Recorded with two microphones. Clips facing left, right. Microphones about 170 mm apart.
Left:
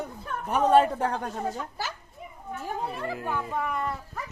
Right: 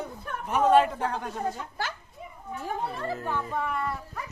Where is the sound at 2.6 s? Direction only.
10° left (ahead or behind).